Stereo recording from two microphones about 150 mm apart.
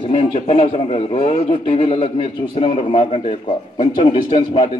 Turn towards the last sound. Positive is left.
turn(degrees=40)  # may be behind; listen again after turning